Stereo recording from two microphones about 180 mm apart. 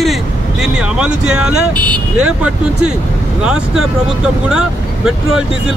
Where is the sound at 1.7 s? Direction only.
25° right (ahead or behind).